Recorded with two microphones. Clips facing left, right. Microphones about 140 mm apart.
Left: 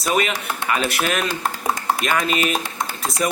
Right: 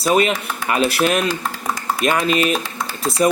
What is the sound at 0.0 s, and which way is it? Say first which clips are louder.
Speech: right 5 dB; 35° right (ahead or behind).